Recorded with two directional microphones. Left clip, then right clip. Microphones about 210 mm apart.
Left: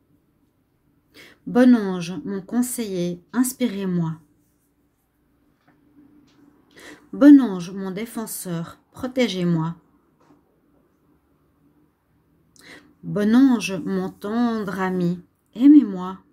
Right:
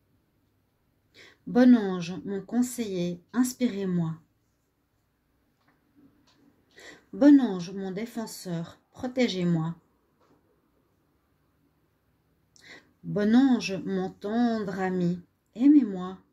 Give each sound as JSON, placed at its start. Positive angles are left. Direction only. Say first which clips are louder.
{"t": 1.1, "sound": "a woman's voice", "louder": "left 5 dB", "side_deg": 15}
{"t": 6.7, "sound": "a woman's voice", "louder": "left 6 dB", "side_deg": 15}
{"t": 12.6, "sound": "speech", "louder": "left 5 dB", "side_deg": 15}